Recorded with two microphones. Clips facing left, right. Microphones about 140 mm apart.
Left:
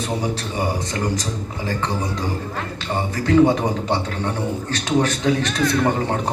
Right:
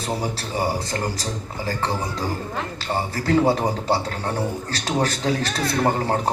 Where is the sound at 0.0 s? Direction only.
35° right (ahead or behind).